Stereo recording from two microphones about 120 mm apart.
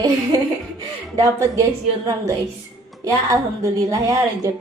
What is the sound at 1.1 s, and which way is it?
Speech, 30° right (ahead or behind).